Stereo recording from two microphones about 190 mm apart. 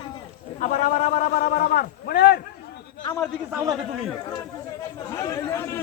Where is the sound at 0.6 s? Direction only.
40° left (ahead or behind); by 2.4 s 55° left (ahead or behind).